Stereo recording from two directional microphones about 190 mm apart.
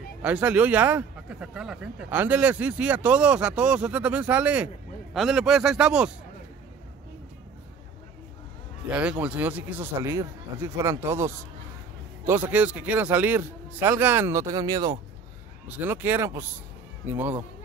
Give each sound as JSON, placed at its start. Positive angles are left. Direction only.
{"t": 0.2, "sound": "a man's voice", "side_deg": -5}
{"t": 9.2, "sound": "speech", "side_deg": -10}
{"t": 12.4, "sound": "speech", "side_deg": -10}